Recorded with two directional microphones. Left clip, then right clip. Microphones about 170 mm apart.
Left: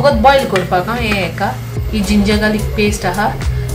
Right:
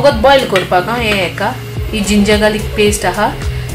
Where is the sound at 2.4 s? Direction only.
65° right (ahead or behind).